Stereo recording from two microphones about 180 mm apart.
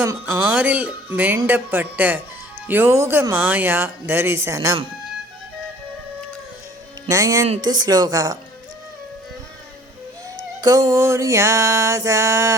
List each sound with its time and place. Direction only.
0.0 s speech: 15° right (ahead or behind)
7.1 s a woman's voice: 20° right (ahead or behind)
10.6 s speech: 20° right (ahead or behind)